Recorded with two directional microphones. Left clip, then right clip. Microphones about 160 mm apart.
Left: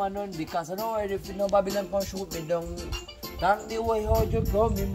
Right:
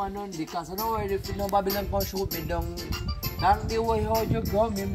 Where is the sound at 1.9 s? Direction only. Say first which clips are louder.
Right 1 dB; 50° right (ahead or behind).